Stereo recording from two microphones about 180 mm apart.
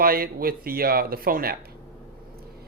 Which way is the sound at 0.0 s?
55° right (ahead or behind).